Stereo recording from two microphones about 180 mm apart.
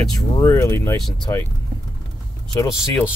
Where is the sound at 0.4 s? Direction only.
15° left (ahead or behind).